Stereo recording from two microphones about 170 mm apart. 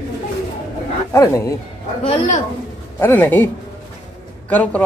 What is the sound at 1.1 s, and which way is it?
Speech, 15° left (ahead or behind).